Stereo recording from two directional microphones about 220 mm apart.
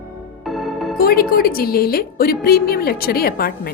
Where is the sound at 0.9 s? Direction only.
45° left (ahead or behind).